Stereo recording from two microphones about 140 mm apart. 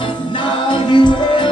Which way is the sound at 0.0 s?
35° left (ahead or behind).